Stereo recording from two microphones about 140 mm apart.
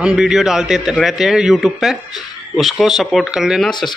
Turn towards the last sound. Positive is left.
turn(degrees=0)  # may be behind; listen again after turning